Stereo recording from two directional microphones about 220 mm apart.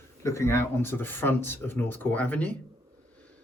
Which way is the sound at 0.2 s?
10° left (ahead or behind).